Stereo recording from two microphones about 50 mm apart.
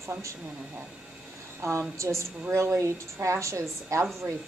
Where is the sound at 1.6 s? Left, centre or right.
Right.